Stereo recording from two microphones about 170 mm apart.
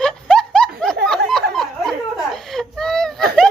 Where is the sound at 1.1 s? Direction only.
5° left (ahead or behind).